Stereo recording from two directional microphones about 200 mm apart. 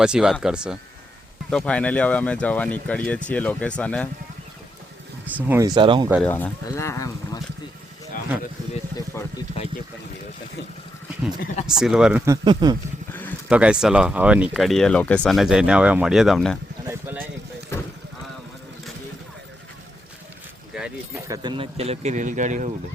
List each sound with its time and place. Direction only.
0.0 s speech: 5° right (ahead or behind)
5.3 s speech: 10° right (ahead or behind)
6.2 s speech: 10° left (ahead or behind)
9.1 s speech: 15° left (ahead or behind)
11.6 s speech: centre (ahead or behind)
12.2 s speech: 20° right (ahead or behind)
13.5 s speech: 5° right (ahead or behind)
16.8 s a sound: 10° right (ahead or behind)
20.7 s keys jangling: 5° right (ahead or behind)
21.2 s speech: 20° right (ahead or behind); by 22.7 s 40° right (ahead or behind)